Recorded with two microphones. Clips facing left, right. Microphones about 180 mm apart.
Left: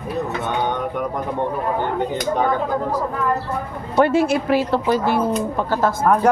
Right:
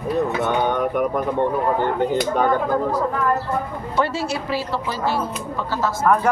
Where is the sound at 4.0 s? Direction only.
55° left (ahead or behind).